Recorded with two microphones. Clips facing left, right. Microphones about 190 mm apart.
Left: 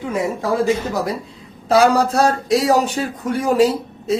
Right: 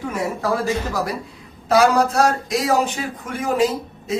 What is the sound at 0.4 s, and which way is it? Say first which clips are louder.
Speech: left 3 dB; 15° left (ahead or behind).